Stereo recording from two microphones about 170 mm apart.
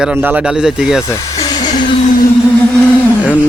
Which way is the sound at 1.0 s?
20° left (ahead or behind).